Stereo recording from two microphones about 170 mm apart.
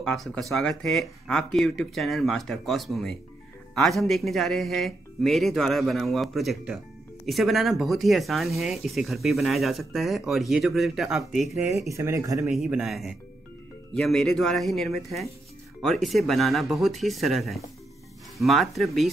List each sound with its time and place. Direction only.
0.0 s speech: 5° left (ahead or behind)
11.9 s speech: 15° right (ahead or behind)
12.4 s speech: 5° right (ahead or behind)